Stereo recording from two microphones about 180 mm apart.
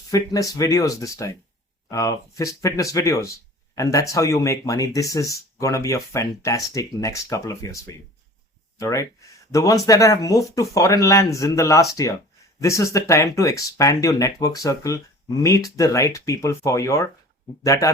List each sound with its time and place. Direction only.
0.1 s speech: 20° left (ahead or behind)